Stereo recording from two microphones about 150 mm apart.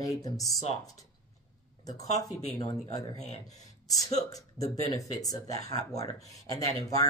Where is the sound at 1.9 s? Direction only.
25° left (ahead or behind).